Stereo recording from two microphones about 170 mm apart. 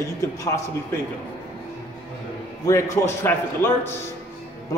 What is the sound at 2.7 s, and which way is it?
A man's voice, 20° left (ahead or behind).